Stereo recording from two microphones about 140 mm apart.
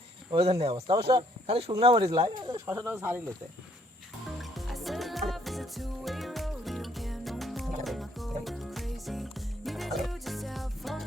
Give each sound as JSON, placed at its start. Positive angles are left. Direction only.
{"t": 0.3, "sound": "speech", "side_deg": -45}
{"t": 2.6, "sound": "speech", "side_deg": -15}
{"t": 4.4, "sound": "music", "side_deg": 0}